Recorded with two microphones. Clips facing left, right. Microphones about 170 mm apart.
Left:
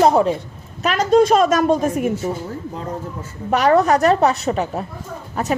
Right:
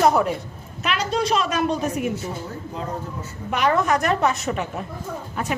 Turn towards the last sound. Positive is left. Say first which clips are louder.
# left 3 dB
turn(degrees=40)  # may be behind; listen again after turning